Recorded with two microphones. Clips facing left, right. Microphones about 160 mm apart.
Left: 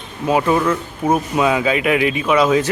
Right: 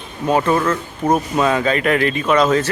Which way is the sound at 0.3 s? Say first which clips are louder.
Even; 10° left (ahead or behind).